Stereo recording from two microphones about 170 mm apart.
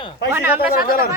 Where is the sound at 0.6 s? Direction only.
60° left (ahead or behind).